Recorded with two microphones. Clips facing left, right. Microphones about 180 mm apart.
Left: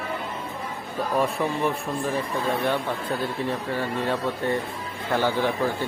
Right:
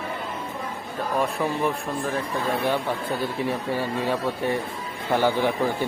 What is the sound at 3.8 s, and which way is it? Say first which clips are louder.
Speech: right 1 dB; 10° right (ahead or behind).